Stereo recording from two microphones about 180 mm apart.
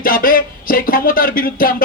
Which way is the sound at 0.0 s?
50° left (ahead or behind).